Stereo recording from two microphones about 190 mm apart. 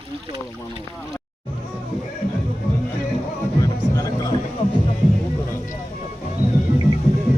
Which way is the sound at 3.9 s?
20° left (ahead or behind).